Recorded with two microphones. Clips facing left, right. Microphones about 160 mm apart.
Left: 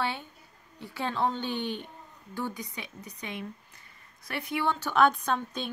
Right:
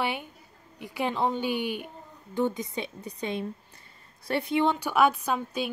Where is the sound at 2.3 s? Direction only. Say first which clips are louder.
Right 8 dB; 20° right (ahead or behind).